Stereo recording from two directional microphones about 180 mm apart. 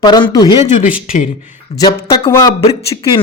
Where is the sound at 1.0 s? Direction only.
45° left (ahead or behind).